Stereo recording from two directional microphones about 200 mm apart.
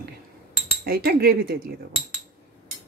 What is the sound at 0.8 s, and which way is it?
Speech, 50° right (ahead or behind).